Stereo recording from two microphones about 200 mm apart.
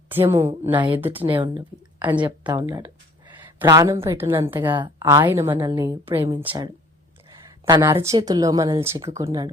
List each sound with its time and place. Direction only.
0.1 s speech: 10° right (ahead or behind)
1.2 s a woman's voice: 25° right (ahead or behind); by 4.7 s 10° right (ahead or behind)
4.7 s a woman's voice: 25° right (ahead or behind)
5.0 s a woman's voice: 10° right (ahead or behind)
7.4 s a sound: 15° right (ahead or behind)
8.0 s speech: 20° right (ahead or behind)